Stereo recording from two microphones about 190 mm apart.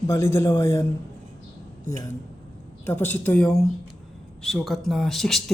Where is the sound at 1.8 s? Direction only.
15° left (ahead or behind).